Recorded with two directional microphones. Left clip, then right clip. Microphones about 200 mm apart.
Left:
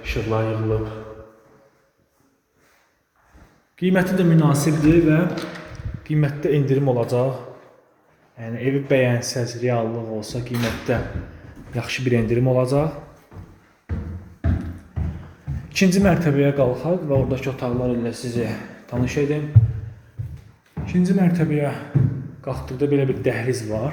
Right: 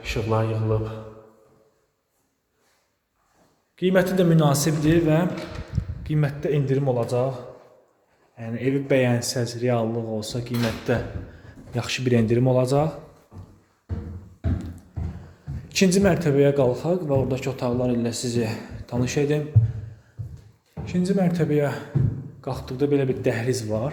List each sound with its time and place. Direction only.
0.0 s a man's voice: 15° right (ahead or behind)
3.8 s a man's voice: 15° right (ahead or behind)
8.4 s a man's voice: 10° right (ahead or behind)
15.7 s a man's voice: 15° right (ahead or behind)
17.8 s speech: 25° right (ahead or behind)
18.4 s speech: 15° right (ahead or behind)
20.8 s a man's voice: 15° right (ahead or behind)